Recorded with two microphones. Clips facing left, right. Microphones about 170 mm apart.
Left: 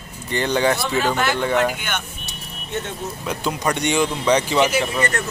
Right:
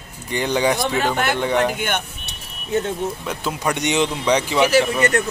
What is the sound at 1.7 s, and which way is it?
Speech, 50° right (ahead or behind).